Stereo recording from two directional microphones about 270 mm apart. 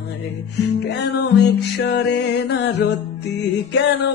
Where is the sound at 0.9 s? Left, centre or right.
Left.